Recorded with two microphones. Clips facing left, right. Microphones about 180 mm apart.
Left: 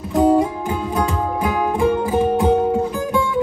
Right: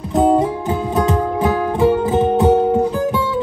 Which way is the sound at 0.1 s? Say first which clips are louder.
Right 1 dB; 20° right (ahead or behind).